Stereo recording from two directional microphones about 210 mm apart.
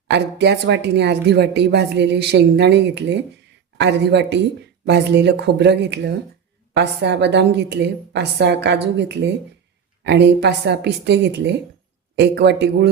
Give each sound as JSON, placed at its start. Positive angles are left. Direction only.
{"t": 0.1, "sound": "a woman's voice", "side_deg": -55}